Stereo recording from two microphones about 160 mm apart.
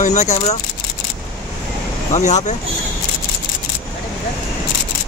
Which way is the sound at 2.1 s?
45° left (ahead or behind).